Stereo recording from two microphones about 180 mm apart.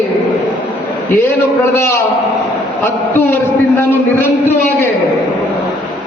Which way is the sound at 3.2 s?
10° left (ahead or behind).